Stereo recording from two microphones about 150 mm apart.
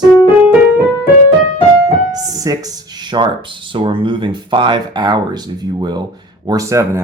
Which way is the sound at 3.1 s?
30° right (ahead or behind).